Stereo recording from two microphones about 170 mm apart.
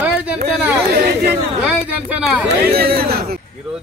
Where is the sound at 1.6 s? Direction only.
5° right (ahead or behind).